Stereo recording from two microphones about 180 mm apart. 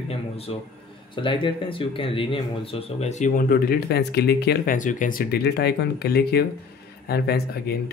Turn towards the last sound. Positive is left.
turn(degrees=60)  # may be behind; listen again after turning